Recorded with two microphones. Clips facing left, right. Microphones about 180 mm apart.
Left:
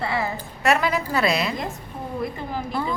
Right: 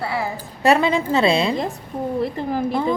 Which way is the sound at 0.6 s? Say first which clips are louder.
Right 5 dB; 30° right (ahead or behind).